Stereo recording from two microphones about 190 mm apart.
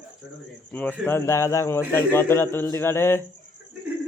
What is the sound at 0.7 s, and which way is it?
A man's voice, 10° left (ahead or behind).